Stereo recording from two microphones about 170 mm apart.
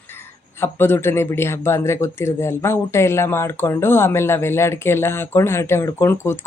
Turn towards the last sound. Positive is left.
turn(degrees=15)  # may be behind; listen again after turning